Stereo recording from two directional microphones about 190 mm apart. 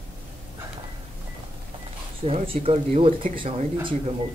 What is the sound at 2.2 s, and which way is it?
Speech, 30° right (ahead or behind).